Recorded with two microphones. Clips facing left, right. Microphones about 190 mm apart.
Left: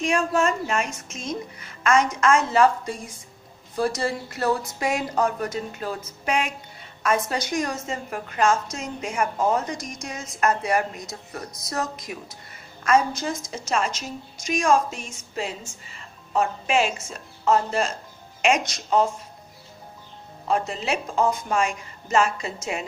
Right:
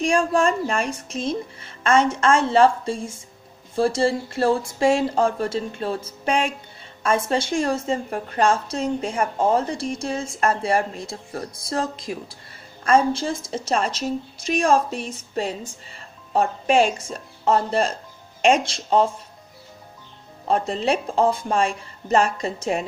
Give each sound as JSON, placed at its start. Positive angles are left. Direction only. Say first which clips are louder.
{"t": 0.0, "sound": "a woman's voice", "louder": "right 3 dB", "side_deg": -30}
{"t": 20.4, "sound": "speech", "louder": "right 4 dB", "side_deg": -35}